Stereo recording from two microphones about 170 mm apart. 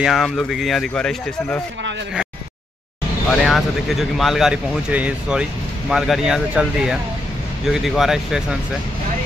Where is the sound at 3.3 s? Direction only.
Centre (ahead or behind).